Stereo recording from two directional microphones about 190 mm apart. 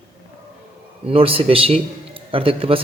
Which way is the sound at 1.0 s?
30° right (ahead or behind).